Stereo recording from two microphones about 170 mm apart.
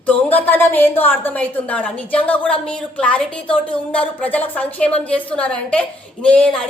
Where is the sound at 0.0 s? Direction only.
10° left (ahead or behind).